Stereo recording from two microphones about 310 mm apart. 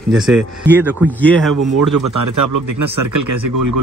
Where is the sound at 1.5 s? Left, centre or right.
Right.